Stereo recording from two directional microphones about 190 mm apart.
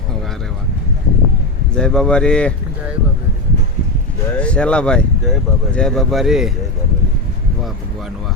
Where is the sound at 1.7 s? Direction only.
5° left (ahead or behind).